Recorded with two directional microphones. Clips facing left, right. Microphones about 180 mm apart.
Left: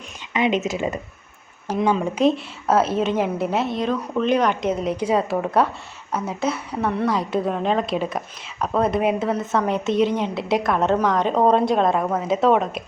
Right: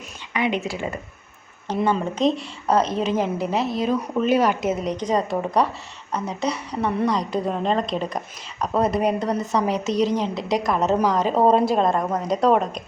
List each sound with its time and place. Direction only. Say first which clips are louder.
0.3 s speech: left 3 dB; 20° left (ahead or behind)
1.6 s speech: left 1 dB; 10° left (ahead or behind)